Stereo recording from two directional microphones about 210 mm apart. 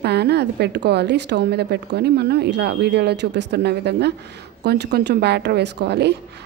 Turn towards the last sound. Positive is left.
turn(degrees=-50)  # may be behind; listen again after turning